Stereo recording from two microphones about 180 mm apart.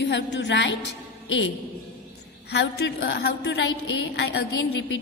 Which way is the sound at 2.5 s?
70° left (ahead or behind).